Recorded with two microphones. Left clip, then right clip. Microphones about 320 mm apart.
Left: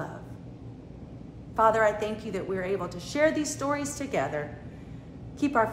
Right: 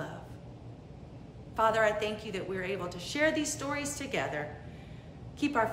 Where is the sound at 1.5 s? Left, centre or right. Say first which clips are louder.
Left 4 dB; centre.